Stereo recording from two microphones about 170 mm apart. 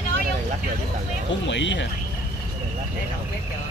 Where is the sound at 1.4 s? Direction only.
90° left.